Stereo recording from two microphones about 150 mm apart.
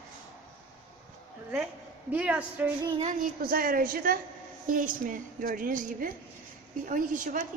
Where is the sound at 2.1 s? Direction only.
10° right (ahead or behind).